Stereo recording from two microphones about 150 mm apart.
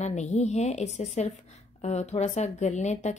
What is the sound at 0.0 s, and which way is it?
A woman's voice, 50° left (ahead or behind).